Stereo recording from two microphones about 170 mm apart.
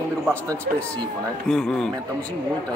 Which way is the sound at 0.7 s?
55° right (ahead or behind).